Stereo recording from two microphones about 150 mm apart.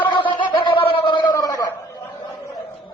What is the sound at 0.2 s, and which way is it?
Gargling, 35° left (ahead or behind).